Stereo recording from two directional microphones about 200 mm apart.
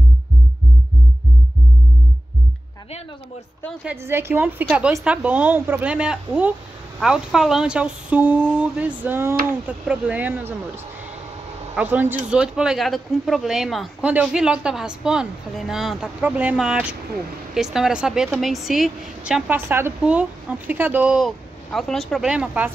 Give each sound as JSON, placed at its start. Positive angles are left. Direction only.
{"t": 3.8, "sound": "a woman's voice", "side_deg": -10}
{"t": 11.7, "sound": "a woman's voice", "side_deg": -10}